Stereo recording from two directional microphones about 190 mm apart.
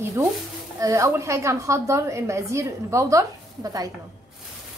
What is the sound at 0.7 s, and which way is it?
A woman's voice, 15° right (ahead or behind).